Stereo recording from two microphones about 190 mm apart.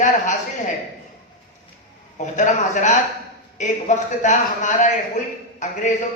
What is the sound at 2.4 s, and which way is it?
A woman's voice, 40° left (ahead or behind).